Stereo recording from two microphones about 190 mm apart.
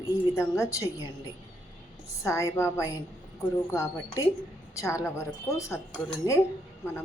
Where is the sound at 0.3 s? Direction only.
15° left (ahead or behind).